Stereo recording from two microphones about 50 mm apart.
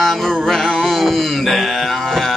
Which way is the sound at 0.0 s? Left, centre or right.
Centre.